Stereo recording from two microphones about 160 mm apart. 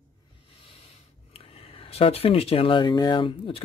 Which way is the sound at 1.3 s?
35° left (ahead or behind).